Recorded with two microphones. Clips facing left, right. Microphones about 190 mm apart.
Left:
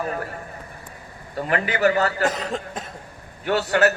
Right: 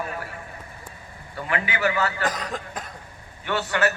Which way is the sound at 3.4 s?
40° left (ahead or behind).